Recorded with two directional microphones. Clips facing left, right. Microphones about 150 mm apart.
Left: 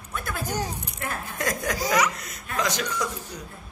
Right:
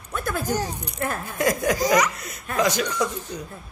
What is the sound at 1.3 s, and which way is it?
Speech, 10° right (ahead or behind).